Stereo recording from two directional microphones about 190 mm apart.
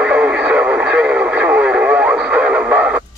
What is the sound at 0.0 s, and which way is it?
Radio, 5° right (ahead or behind).